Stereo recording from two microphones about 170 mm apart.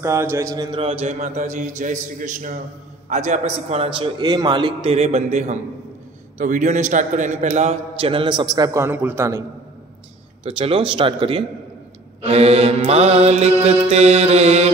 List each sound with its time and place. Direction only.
0.0 s a man's voice: 15° right (ahead or behind)
10.4 s a man's voice: 35° right (ahead or behind)